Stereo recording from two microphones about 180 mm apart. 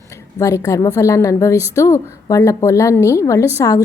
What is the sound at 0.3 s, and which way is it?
A woman's voice, 15° left (ahead or behind).